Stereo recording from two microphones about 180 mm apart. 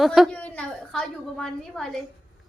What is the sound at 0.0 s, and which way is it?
A woman's voice, centre (ahead or behind).